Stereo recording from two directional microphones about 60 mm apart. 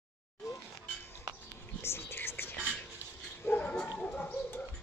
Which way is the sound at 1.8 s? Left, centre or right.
Left.